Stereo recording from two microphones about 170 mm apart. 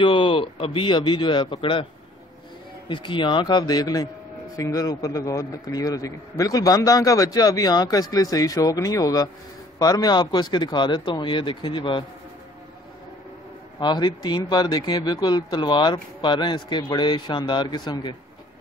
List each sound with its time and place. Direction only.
0.0 s a man's voice: 30° left (ahead or behind)
2.9 s a man's voice: 30° left (ahead or behind)
13.7 s a man's voice: 25° left (ahead or behind)